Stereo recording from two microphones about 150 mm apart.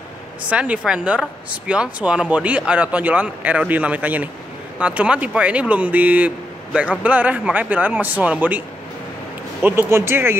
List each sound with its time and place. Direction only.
0.5 s speech: 5° right (ahead or behind)